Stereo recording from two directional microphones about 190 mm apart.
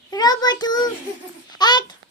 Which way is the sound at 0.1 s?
20° left (ahead or behind).